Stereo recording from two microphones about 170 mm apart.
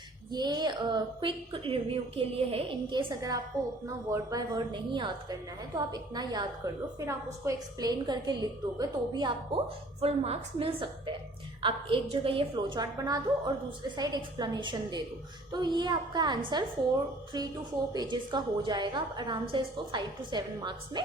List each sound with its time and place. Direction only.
0.3 s a woman's voice: 25° right (ahead or behind)
12.1 s a woman's voice: 30° right (ahead or behind)